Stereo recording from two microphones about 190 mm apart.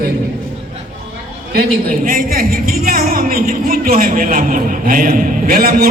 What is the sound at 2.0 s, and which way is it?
A woman's voice, 50° right (ahead or behind).